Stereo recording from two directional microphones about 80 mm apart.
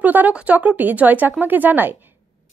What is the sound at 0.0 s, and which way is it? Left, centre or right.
A woman's voice, right.